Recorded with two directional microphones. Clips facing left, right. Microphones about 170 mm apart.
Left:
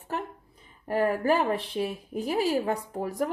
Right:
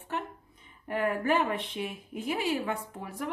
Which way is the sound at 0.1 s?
35° left (ahead or behind).